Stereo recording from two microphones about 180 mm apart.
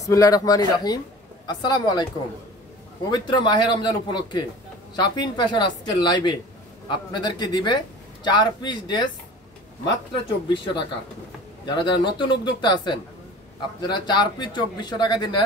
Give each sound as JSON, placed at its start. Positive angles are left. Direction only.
{"t": 0.0, "sound": "a man's voice", "side_deg": 20}
{"t": 3.1, "sound": "a man's voice", "side_deg": 25}
{"t": 10.5, "sound": "a man's voice", "side_deg": 25}